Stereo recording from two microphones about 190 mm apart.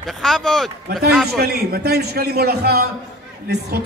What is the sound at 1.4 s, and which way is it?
A man's voice, 55° right (ahead or behind).